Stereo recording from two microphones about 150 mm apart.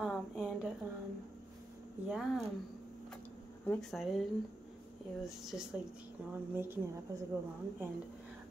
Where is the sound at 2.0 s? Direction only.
5° right (ahead or behind).